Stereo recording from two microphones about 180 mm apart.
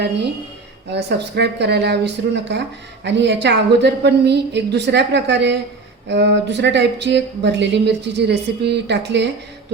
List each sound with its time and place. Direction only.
0.9 s speech: 70° right (ahead or behind)